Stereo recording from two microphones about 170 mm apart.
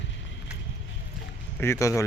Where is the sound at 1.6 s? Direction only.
15° left (ahead or behind).